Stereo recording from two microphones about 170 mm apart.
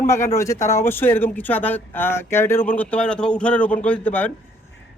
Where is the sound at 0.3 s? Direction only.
15° left (ahead or behind).